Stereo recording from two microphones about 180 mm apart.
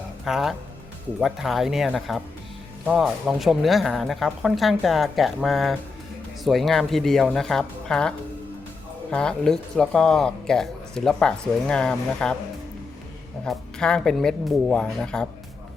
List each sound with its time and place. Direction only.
0.3 s speech: centre (ahead or behind)
13.4 s speech: 5° left (ahead or behind)